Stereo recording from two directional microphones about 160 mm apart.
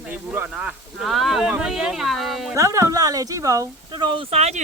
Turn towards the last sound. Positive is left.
turn(degrees=-40)  # may be behind; listen again after turning